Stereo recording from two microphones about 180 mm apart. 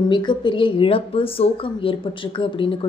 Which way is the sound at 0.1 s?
25° left (ahead or behind).